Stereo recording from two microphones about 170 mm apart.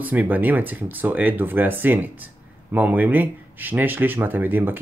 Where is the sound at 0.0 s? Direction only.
10° right (ahead or behind).